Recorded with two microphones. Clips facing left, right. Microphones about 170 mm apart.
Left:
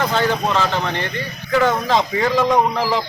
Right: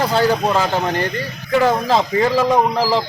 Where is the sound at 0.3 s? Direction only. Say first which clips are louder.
Right 2 dB; 10° right (ahead or behind).